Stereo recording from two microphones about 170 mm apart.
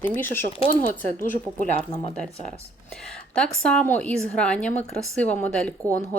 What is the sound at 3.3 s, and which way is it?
Speech, 5° left (ahead or behind).